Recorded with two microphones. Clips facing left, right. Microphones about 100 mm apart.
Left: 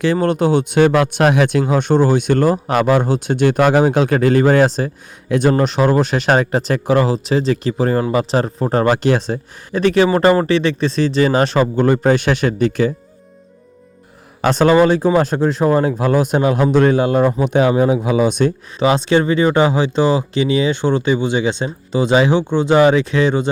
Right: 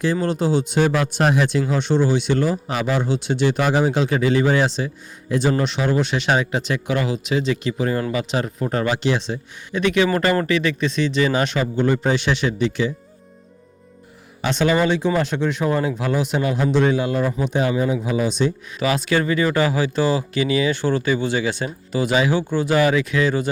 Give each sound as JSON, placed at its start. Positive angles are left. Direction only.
{"t": 0.0, "sound": "speech", "side_deg": 65}
{"t": 14.4, "sound": "speech", "side_deg": 40}
{"t": 17.4, "sound": "speech", "side_deg": 65}
{"t": 18.8, "sound": "speech", "side_deg": 30}